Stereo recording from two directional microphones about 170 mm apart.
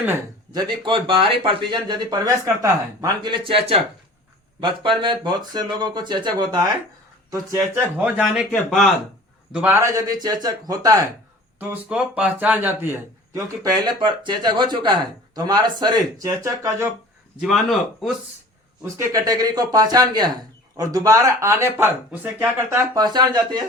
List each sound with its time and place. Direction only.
0.9 s a man's voice: 30° right (ahead or behind)
3.4 s a man's voice: 30° right (ahead or behind)
11.6 s a man's voice: 5° right (ahead or behind)
17.4 s speech: centre (ahead or behind)
18.8 s a man's voice: 20° right (ahead or behind)